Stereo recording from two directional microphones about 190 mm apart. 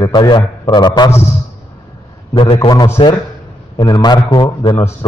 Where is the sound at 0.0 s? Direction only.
20° left (ahead or behind).